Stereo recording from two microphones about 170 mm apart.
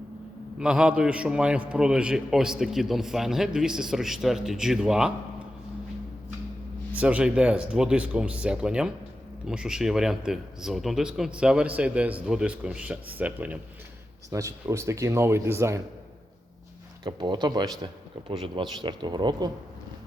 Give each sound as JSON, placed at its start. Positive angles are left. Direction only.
{"t": 0.6, "sound": "speech", "side_deg": -5}
{"t": 6.9, "sound": "speech", "side_deg": -10}
{"t": 17.0, "sound": "speech", "side_deg": -25}